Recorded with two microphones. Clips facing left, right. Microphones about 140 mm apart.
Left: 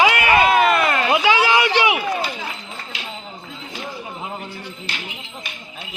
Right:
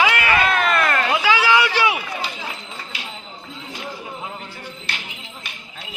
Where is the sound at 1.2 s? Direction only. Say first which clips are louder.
Left 1 dB; 20° left (ahead or behind).